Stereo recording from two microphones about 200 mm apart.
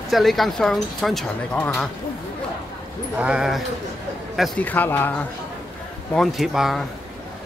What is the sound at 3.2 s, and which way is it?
Speech, 5° right (ahead or behind).